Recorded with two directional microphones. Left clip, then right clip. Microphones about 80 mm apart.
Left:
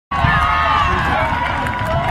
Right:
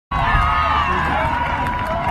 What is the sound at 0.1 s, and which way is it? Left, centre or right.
Run, left.